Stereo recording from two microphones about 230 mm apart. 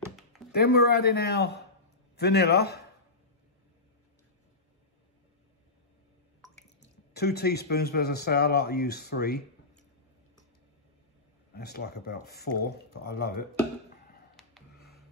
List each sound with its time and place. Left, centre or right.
0.5 s speech: left
6.8 s speech: left
11.5 s speech: left
14.8 s printer: left